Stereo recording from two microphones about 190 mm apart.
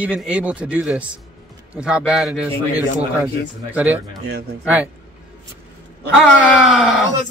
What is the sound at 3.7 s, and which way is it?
Speech, 10° right (ahead or behind).